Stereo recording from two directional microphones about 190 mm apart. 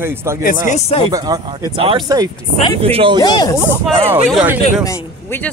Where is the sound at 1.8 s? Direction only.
25° right (ahead or behind).